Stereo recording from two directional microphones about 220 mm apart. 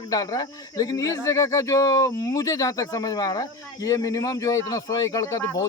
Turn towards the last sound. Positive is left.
turn(degrees=15)  # may be behind; listen again after turning